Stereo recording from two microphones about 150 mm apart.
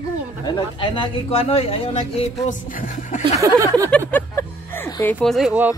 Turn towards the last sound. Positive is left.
turn(degrees=-10)  # may be behind; listen again after turning